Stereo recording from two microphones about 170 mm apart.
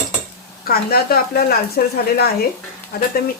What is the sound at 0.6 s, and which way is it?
Speech, 60° left (ahead or behind).